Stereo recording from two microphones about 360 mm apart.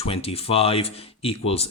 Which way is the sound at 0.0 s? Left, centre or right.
Centre.